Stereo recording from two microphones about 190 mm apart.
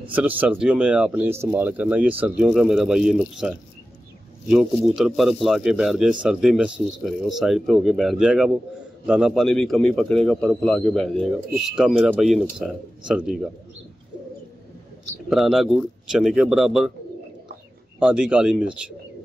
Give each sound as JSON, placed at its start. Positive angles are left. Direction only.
{"t": 0.1, "sound": "a man's voice", "side_deg": -10}
{"t": 15.2, "sound": "a man's voice", "side_deg": 0}
{"t": 17.9, "sound": "a man's voice", "side_deg": -5}